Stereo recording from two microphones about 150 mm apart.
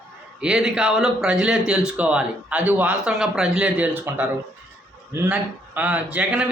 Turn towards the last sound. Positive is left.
turn(degrees=-5)  # may be behind; listen again after turning